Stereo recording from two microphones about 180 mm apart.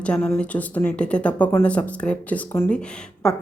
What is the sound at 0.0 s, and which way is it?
A woman's voice, 5° left (ahead or behind).